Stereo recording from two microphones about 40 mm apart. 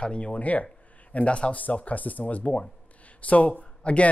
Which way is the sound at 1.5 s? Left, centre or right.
Left.